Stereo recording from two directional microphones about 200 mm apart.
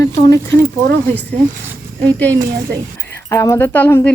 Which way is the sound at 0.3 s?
15° left (ahead or behind).